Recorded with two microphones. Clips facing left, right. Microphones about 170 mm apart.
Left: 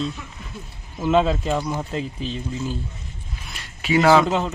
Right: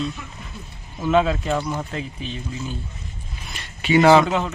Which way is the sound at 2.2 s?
35° left (ahead or behind).